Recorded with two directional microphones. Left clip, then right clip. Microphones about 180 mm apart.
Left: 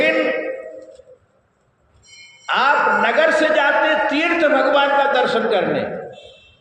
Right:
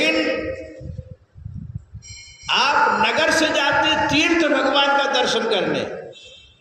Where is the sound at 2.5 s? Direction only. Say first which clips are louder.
Left 2 dB; 15° right (ahead or behind).